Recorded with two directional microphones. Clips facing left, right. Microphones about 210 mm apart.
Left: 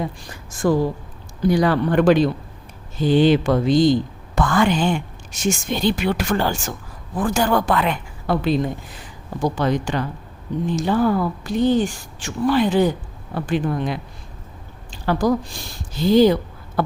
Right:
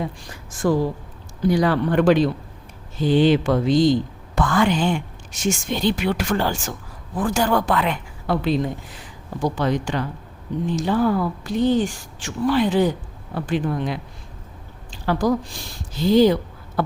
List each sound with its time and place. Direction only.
1.5 s speech: 45° left (ahead or behind)
14.8 s a sound: 45° left (ahead or behind)
16.0 s speech: 50° left (ahead or behind)